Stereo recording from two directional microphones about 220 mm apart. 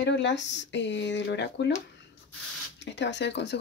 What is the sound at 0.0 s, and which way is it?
Speech, 50° left (ahead or behind).